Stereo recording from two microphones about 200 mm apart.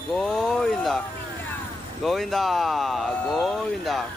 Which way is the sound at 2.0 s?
Centre (ahead or behind).